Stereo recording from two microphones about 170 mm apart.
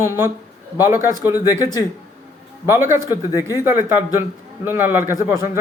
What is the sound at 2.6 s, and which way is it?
Speech, 15° right (ahead or behind).